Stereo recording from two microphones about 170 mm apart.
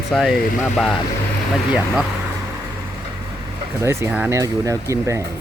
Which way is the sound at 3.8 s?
10° right (ahead or behind).